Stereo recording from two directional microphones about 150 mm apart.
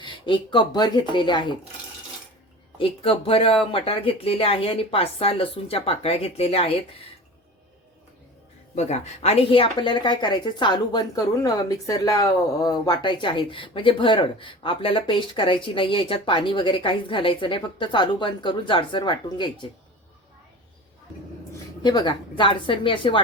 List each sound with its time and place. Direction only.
0.0 s a woman's voice: 35° left (ahead or behind)
2.7 s a woman's voice: 40° left (ahead or behind)
8.7 s a woman's voice: 50° left (ahead or behind); by 19.5 s 35° left (ahead or behind)
21.8 s a woman's voice: 30° left (ahead or behind)